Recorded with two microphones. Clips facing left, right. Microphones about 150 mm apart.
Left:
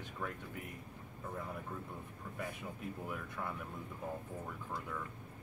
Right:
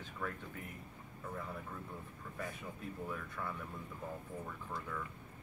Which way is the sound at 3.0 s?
10° left (ahead or behind).